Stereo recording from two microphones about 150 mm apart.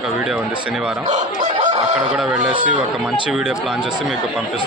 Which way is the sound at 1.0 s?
55° right (ahead or behind).